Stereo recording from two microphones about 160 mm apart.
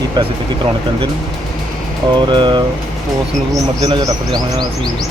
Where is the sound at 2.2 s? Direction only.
30° right (ahead or behind).